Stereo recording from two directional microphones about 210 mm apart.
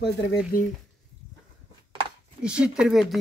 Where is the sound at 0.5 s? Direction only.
40° left (ahead or behind).